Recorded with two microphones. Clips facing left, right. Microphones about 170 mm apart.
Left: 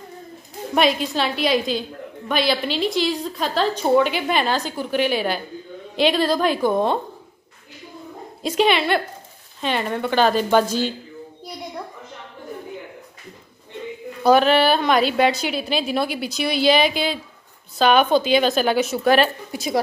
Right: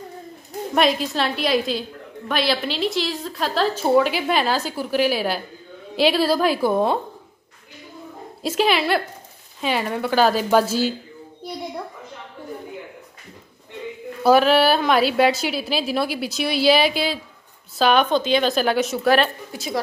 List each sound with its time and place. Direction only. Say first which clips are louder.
0.7 s a woman's voice: even; centre (ahead or behind)
8.4 s a woman's voice: left 1 dB; centre (ahead or behind)
14.2 s a woman's voice: even; 5° right (ahead or behind)